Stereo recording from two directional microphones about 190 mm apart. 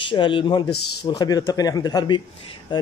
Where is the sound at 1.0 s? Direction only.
20° left (ahead or behind).